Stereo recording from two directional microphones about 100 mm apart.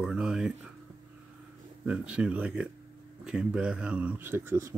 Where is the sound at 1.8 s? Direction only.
10° right (ahead or behind).